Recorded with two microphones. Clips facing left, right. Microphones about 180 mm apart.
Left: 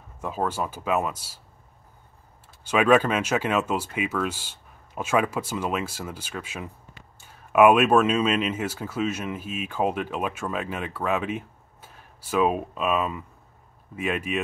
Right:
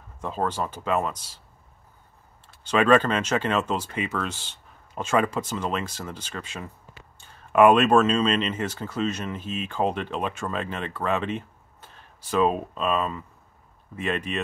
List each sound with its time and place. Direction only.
0.2 s speech: 10° left (ahead or behind)
2.6 s speech: 10° left (ahead or behind)